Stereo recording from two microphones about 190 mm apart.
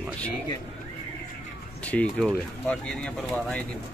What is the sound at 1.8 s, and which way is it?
Speech, 5° left (ahead or behind).